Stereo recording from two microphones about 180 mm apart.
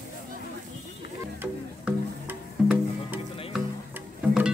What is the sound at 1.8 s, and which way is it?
Music, 10° right (ahead or behind).